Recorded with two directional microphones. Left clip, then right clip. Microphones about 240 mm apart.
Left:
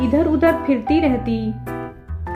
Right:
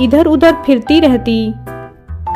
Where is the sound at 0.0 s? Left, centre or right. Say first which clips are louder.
Right 8 dB; right.